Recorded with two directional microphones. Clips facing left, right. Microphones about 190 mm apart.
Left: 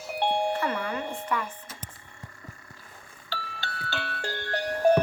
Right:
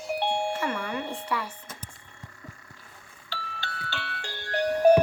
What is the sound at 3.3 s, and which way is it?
Music, 40° left (ahead or behind).